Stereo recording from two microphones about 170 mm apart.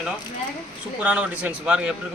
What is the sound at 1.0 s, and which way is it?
Speech, 10° right (ahead or behind).